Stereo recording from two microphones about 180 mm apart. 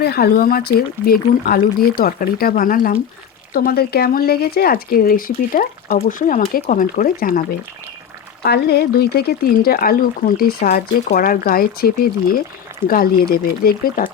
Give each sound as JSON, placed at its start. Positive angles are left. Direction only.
{"t": 0.0, "sound": "speech", "side_deg": 60}
{"t": 8.4, "sound": "speech", "side_deg": 65}
{"t": 12.9, "sound": "speech", "side_deg": 55}